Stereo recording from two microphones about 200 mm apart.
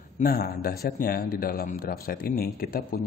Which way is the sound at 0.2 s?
45° left (ahead or behind).